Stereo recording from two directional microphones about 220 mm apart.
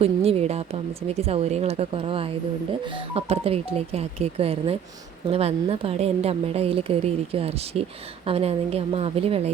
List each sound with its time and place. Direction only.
0.0 s a woman's voice: 25° right (ahead or behind)